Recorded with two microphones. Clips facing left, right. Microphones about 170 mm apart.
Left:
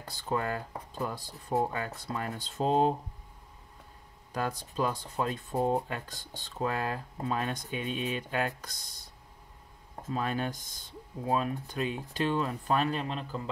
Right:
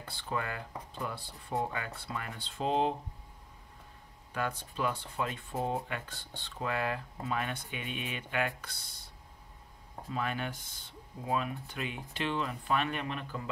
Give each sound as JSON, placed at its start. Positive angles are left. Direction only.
{"t": 0.0, "sound": "speech", "side_deg": 40}
{"t": 4.3, "sound": "speech", "side_deg": 35}
{"t": 10.1, "sound": "speech", "side_deg": 35}